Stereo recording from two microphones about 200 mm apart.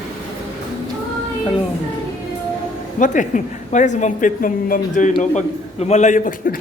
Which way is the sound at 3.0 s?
40° left (ahead or behind).